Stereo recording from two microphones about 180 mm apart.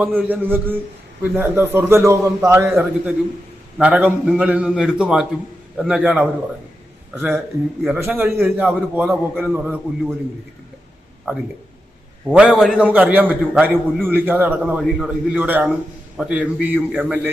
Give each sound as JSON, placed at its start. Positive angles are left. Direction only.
{"t": 0.0, "sound": "a man's voice", "side_deg": -10}
{"t": 9.0, "sound": "a man's voice", "side_deg": 0}
{"t": 11.3, "sound": "a man's voice", "side_deg": -10}